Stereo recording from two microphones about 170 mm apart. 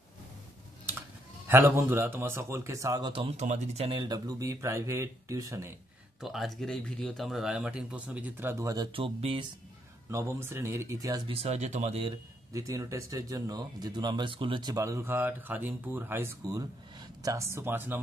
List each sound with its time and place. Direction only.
1.5 s speech: 15° right (ahead or behind); by 4.0 s 35° right (ahead or behind)
4.0 s speech: 25° right (ahead or behind)
6.2 s speech: centre (ahead or behind); by 8.8 s 15° right (ahead or behind)
8.9 s speech: 30° right (ahead or behind)
10.1 s speech: 15° right (ahead or behind)
11.3 s speech: 40° right (ahead or behind)
12.5 s speech: 20° right (ahead or behind)